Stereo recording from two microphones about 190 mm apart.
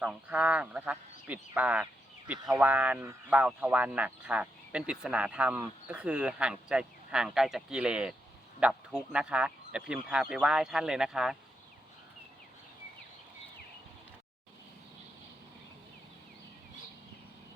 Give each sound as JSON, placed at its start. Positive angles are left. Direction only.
{"t": 0.0, "sound": "speech", "side_deg": -5}